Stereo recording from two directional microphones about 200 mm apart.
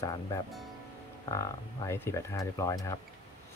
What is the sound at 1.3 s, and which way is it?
Speech, 15° left (ahead or behind).